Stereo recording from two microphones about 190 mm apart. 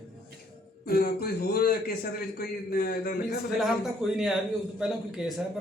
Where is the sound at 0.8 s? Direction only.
55° left (ahead or behind).